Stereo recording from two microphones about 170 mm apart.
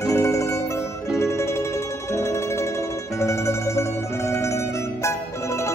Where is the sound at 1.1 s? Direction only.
15° left (ahead or behind).